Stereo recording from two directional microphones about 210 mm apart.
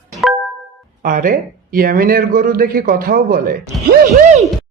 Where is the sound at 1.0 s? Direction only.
40° right (ahead or behind).